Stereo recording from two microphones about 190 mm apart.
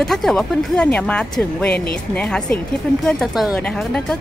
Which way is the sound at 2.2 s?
5° left (ahead or behind).